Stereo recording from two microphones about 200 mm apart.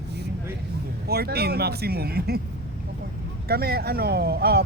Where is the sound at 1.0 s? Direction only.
50° right (ahead or behind).